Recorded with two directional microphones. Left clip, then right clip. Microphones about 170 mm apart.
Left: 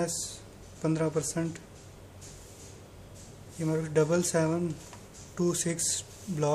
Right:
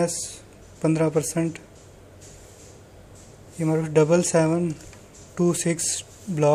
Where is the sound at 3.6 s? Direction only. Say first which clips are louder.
Right 7 dB; 30° right (ahead or behind).